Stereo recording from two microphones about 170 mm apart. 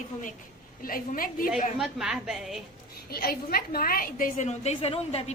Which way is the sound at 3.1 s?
65° left (ahead or behind).